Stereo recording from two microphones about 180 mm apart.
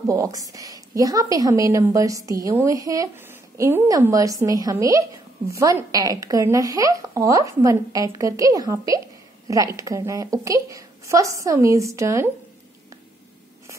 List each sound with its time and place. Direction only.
0.0 s a woman's voice: 15° right (ahead or behind)